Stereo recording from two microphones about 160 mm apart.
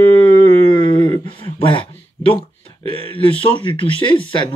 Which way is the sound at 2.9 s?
35° left (ahead or behind).